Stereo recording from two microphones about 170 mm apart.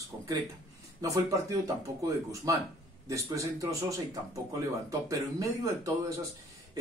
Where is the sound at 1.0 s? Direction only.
20° right (ahead or behind).